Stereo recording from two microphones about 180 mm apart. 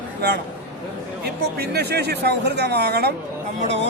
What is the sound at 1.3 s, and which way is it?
Speech, 65° right (ahead or behind).